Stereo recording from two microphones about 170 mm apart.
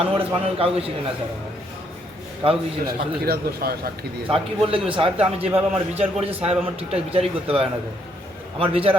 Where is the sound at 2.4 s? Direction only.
30° right (ahead or behind).